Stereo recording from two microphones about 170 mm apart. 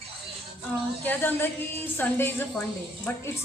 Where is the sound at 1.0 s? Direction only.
10° left (ahead or behind).